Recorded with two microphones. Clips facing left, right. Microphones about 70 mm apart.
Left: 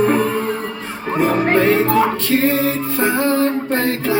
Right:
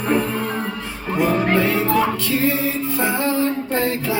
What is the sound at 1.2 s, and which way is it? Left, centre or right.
Music, left.